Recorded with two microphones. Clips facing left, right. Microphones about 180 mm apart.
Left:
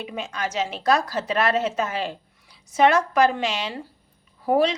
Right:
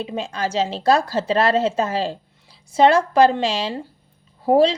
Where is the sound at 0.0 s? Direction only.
30° right (ahead or behind).